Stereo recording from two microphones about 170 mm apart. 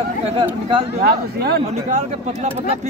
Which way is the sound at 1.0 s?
65° right (ahead or behind).